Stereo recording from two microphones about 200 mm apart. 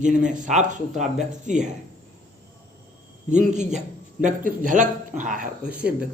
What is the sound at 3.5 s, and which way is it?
A man's voice, 35° right (ahead or behind).